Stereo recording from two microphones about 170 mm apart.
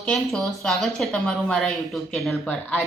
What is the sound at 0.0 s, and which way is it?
A woman's voice, 5° left (ahead or behind).